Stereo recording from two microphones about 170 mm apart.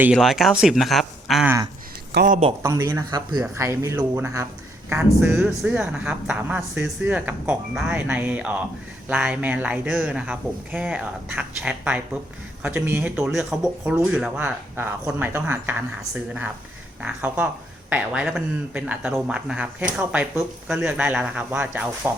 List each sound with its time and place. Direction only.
0.0 s speech: centre (ahead or behind)
1.5 s speech: 20° right (ahead or behind)
2.1 s a man's voice: 60° right (ahead or behind)
2.6 s speech: 15° right (ahead or behind)
17.0 s speech: 10° right (ahead or behind)